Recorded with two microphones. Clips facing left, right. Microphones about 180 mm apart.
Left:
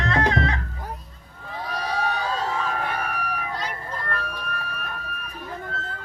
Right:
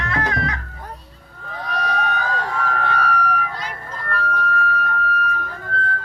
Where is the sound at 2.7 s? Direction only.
20° left (ahead or behind).